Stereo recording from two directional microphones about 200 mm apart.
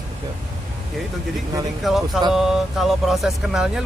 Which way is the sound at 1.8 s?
Centre (ahead or behind).